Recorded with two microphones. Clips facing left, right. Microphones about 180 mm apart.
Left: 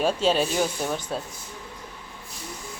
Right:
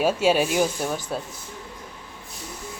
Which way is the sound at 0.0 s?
10° right (ahead or behind).